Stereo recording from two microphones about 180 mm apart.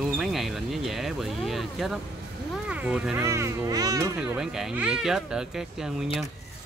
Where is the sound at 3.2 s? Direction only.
15° right (ahead or behind).